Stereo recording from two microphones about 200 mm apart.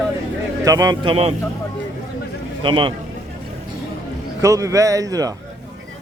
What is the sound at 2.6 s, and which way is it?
Speech, 25° right (ahead or behind).